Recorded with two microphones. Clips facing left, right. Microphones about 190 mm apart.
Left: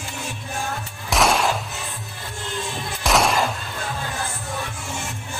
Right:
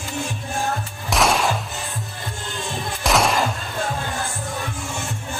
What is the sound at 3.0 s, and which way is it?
Music, centre (ahead or behind).